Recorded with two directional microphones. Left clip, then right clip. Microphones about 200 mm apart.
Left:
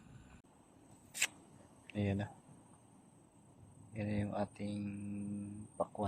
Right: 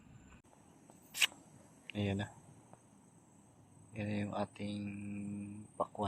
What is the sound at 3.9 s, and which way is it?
Speech, 5° right (ahead or behind).